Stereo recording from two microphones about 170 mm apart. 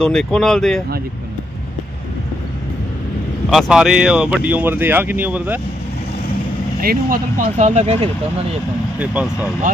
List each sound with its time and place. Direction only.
0.0 s speech: 5° left (ahead or behind)
3.4 s speech: centre (ahead or behind)
6.8 s speech: 55° right (ahead or behind); by 8.1 s 40° right (ahead or behind)
9.0 s speech: 5° right (ahead or behind)